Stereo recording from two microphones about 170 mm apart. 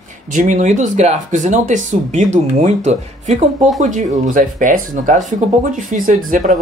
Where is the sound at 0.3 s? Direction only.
50° right (ahead or behind).